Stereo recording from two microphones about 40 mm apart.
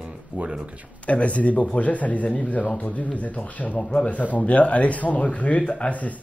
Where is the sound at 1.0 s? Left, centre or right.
Left.